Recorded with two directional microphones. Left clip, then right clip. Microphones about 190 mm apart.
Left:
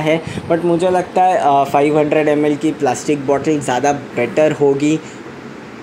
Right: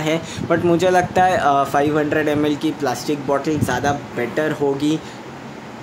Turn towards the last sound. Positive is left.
turn(degrees=10)  # may be behind; listen again after turning